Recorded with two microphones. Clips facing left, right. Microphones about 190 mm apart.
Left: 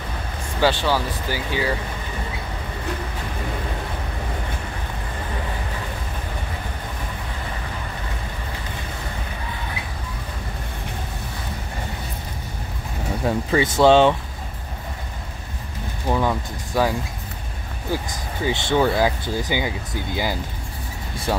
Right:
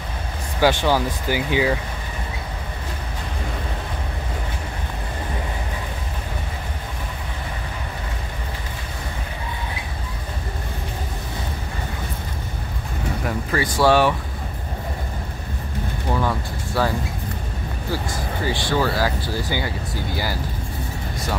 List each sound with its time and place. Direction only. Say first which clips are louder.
0.6 s speech: right 2 dB; 15° right (ahead or behind)
13.2 s speech: left 5 dB; 25° left (ahead or behind)
16.1 s speech: left 2 dB; 15° left (ahead or behind)
18.1 s speech: even; 20° left (ahead or behind)